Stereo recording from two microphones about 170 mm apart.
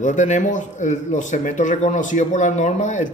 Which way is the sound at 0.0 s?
45° left (ahead or behind).